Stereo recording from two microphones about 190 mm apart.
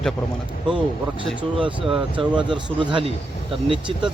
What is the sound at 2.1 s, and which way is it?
Speech, 25° right (ahead or behind).